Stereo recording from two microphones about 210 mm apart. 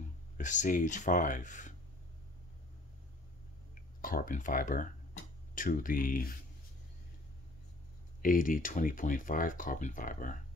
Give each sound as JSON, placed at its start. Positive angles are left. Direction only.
{"t": 0.4, "sound": "speech", "side_deg": 35}
{"t": 3.7, "sound": "speech", "side_deg": 40}
{"t": 8.2, "sound": "speech", "side_deg": 40}